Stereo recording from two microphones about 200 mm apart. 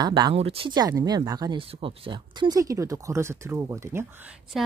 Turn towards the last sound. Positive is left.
turn(degrees=0)  # may be behind; listen again after turning